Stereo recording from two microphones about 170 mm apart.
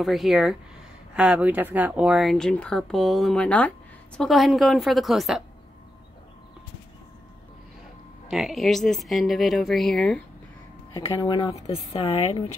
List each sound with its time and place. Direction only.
0.0 s speech: centre (ahead or behind)
8.3 s speech: centre (ahead or behind)
11.1 s speech: 30° left (ahead or behind)